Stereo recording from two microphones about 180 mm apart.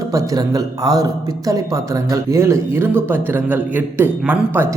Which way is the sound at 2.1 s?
15° right (ahead or behind).